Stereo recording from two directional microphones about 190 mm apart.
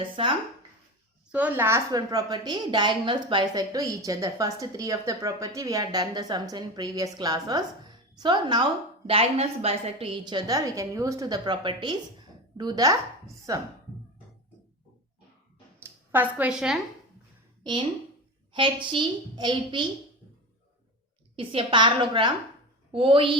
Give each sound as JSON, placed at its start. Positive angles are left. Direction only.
{"t": 0.2, "sound": "a woman's voice", "side_deg": -30}
{"t": 1.3, "sound": "a woman's voice", "side_deg": -10}
{"t": 15.8, "sound": "a woman's voice", "side_deg": -10}
{"t": 17.6, "sound": "a woman's voice", "side_deg": -25}
{"t": 21.3, "sound": "a woman's voice", "side_deg": -25}